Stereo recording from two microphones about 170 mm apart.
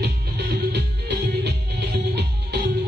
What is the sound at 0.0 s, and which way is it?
Music, 80° right.